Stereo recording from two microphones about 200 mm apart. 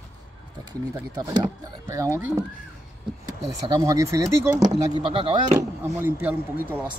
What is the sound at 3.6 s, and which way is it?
Speech, 20° right (ahead or behind).